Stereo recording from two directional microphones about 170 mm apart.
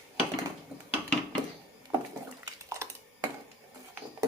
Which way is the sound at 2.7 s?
15° right (ahead or behind).